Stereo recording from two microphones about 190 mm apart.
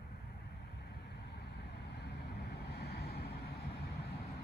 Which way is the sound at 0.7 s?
60° left (ahead or behind).